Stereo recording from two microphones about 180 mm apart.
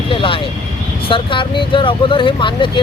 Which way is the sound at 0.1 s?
30° left (ahead or behind).